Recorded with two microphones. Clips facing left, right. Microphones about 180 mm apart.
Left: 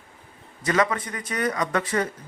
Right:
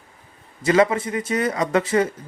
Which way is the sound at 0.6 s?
25° right (ahead or behind).